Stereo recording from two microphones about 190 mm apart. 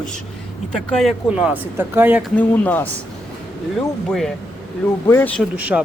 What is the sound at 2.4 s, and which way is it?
Speech, 10° left (ahead or behind).